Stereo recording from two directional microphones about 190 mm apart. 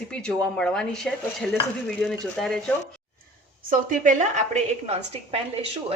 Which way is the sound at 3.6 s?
45° right (ahead or behind).